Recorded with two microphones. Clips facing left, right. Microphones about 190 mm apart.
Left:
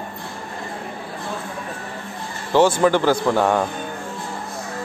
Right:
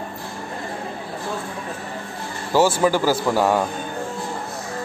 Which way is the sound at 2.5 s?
5° right (ahead or behind).